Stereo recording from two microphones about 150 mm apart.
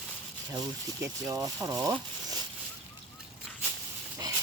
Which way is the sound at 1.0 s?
25° right (ahead or behind).